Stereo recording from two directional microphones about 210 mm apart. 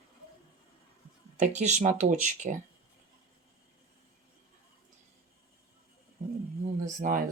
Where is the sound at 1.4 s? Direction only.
35° right (ahead or behind).